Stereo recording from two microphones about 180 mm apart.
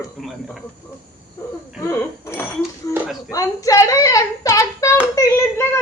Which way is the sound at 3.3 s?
20° left (ahead or behind).